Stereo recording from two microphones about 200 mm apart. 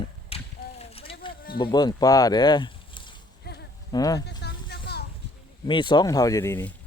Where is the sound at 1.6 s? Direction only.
20° left (ahead or behind).